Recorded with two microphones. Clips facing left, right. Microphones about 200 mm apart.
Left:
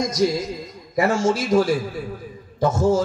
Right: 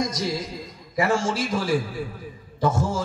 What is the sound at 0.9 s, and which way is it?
Speech, 40° left (ahead or behind).